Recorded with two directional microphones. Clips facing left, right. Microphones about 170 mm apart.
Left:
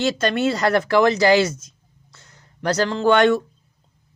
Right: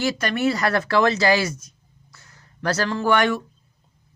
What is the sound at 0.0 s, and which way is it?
Speech, 25° left (ahead or behind).